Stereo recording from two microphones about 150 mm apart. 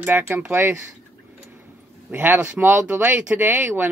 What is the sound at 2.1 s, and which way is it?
Speech, 15° right (ahead or behind).